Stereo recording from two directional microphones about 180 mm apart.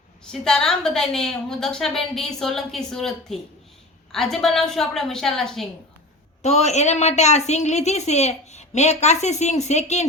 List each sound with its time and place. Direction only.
0.3 s a woman's voice: 5° left (ahead or behind)
6.4 s a woman's voice: 40° left (ahead or behind)